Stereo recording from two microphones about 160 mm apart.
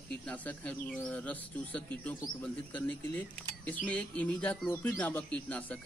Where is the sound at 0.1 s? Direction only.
10° left (ahead or behind).